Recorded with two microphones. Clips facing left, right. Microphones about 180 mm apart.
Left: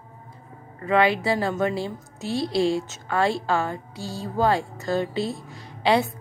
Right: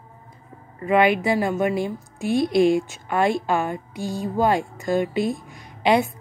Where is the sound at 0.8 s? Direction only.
15° right (ahead or behind).